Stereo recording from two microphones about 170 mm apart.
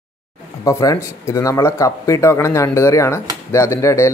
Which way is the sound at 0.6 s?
20° left (ahead or behind).